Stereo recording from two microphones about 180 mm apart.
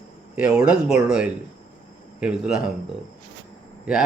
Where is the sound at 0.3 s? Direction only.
5° right (ahead or behind).